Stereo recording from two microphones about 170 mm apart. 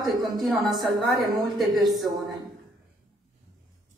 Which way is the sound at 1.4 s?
Centre (ahead or behind).